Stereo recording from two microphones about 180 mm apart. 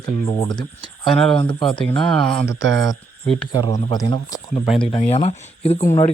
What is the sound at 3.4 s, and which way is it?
Speech, 30° left (ahead or behind).